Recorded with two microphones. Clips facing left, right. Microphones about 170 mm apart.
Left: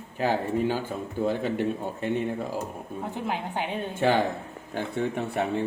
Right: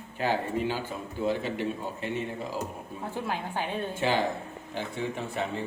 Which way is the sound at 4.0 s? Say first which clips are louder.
Left 5 dB; 55° left (ahead or behind).